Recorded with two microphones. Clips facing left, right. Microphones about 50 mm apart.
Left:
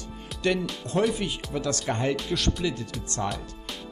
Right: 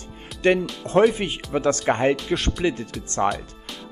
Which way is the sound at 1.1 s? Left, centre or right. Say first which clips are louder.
Right 4 dB; right.